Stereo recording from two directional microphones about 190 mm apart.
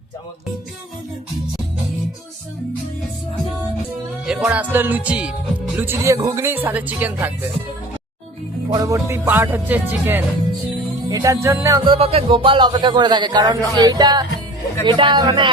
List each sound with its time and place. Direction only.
4.3 s speech: 5° right (ahead or behind)
8.7 s speech: 15° right (ahead or behind)
11.9 s speech: 30° right (ahead or behind)